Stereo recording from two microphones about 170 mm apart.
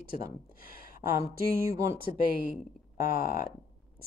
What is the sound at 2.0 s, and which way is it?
Speech, 60° left (ahead or behind).